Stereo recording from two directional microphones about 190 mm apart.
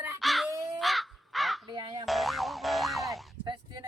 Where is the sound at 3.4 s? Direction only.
25° right (ahead or behind).